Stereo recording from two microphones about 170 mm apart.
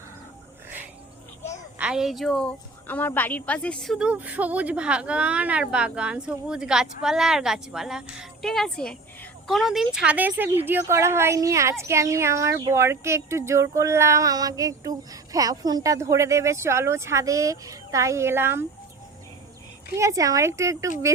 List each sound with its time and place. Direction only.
1.8 s a woman's voice: 5° right (ahead or behind)
20.0 s a woman's voice: 20° right (ahead or behind)